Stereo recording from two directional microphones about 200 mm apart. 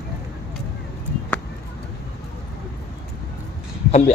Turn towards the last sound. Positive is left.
turn(degrees=30)  # may be behind; listen again after turning